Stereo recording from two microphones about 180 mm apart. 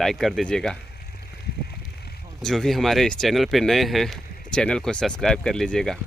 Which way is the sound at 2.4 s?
Centre (ahead or behind).